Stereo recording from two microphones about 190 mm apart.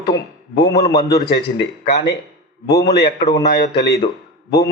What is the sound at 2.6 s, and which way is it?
A man's voice, 15° left (ahead or behind).